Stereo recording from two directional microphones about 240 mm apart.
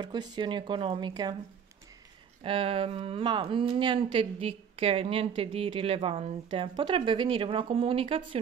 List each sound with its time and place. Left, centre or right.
0.0 s speech: centre
2.4 s speech: right